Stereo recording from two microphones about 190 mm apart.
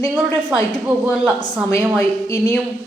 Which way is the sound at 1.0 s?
5° right (ahead or behind).